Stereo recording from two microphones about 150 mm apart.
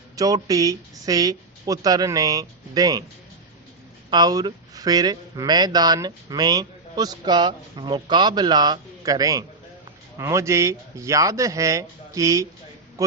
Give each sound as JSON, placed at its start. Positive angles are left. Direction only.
{"t": 0.2, "sound": "a man's voice", "side_deg": -25}
{"t": 4.1, "sound": "a man's voice", "side_deg": -25}